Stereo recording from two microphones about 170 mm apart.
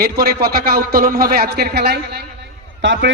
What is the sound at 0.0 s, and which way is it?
A man's voice, 65° right (ahead or behind).